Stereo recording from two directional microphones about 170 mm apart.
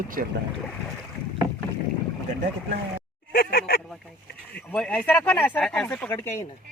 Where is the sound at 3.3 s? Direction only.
60° left (ahead or behind).